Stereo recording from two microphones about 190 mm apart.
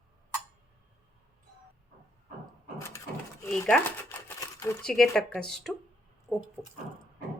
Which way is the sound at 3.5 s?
5° left (ahead or behind).